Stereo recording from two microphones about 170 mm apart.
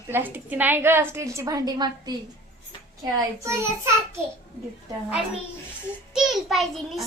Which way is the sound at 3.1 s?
15° right (ahead or behind).